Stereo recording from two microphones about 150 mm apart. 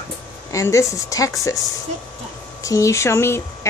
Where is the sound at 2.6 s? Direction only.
20° left (ahead or behind).